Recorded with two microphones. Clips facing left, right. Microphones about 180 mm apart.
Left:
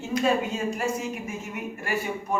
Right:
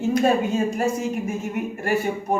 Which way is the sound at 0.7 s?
45° right (ahead or behind).